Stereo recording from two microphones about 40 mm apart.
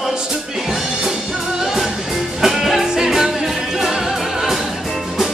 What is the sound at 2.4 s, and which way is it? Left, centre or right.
Music, centre.